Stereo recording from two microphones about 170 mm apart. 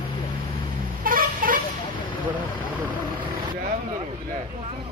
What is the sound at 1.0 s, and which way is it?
Vehicle, 55° right (ahead or behind).